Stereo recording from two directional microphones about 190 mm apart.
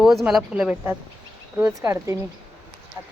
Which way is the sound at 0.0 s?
Centre (ahead or behind).